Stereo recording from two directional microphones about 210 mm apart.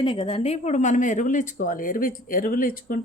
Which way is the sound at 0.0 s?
20° left (ahead or behind).